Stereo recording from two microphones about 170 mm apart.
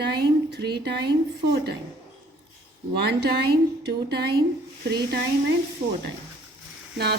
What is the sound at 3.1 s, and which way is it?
A woman's voice, 70° right (ahead or behind).